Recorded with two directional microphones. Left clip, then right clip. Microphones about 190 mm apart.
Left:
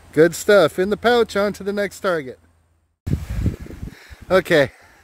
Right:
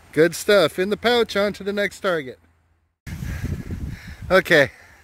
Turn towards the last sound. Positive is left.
turn(degrees=5)  # may be behind; listen again after turning